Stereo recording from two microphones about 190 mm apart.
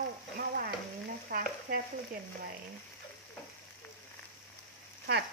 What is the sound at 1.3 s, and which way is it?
Stir, 50° right (ahead or behind).